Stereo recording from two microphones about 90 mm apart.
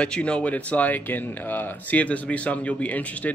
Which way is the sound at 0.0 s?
10° left (ahead or behind).